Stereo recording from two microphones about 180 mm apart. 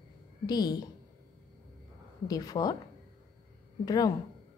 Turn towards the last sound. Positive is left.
turn(degrees=20)  # may be behind; listen again after turning